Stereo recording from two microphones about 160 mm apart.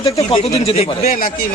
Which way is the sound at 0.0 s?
35° left (ahead or behind).